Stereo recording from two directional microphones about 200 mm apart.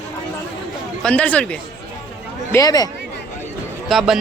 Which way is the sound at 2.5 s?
20° left (ahead or behind).